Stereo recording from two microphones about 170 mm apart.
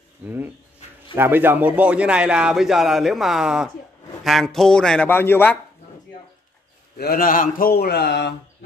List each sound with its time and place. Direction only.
1.1 s speech: 10° right (ahead or behind); by 5.6 s 10° left (ahead or behind)
7.0 s speech: 60° left (ahead or behind); by 8.4 s 80° left